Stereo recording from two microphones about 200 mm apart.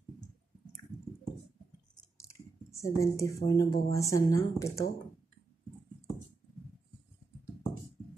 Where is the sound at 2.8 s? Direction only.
15° left (ahead or behind).